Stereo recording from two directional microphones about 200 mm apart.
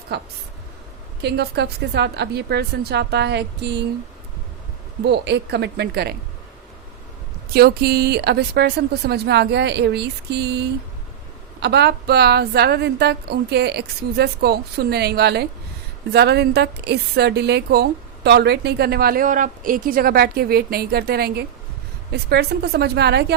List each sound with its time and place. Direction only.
0.1 s a woman's voice: 55° right (ahead or behind)
5.0 s a woman's voice: 60° right (ahead or behind)
7.5 s a woman's voice: 50° right (ahead or behind)